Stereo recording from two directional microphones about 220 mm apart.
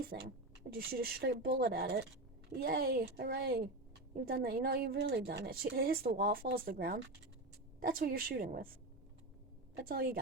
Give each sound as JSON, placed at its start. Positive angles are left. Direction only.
{"t": 0.1, "sound": "a woman's voice", "side_deg": -50}
{"t": 9.8, "sound": "a woman's voice", "side_deg": -40}